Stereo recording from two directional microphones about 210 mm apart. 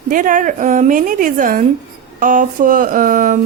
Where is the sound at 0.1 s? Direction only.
40° right (ahead or behind).